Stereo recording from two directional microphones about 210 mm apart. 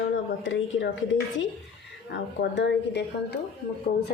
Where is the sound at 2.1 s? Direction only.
55° left (ahead or behind).